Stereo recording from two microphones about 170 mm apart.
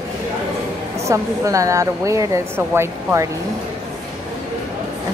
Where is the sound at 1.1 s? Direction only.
20° right (ahead or behind).